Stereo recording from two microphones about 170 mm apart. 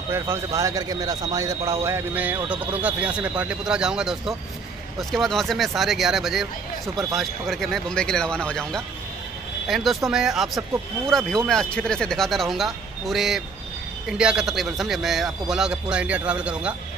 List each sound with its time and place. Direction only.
0.1 s a man's voice: 15° right (ahead or behind)